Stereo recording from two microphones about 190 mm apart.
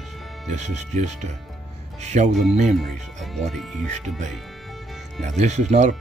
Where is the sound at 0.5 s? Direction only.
35° right (ahead or behind).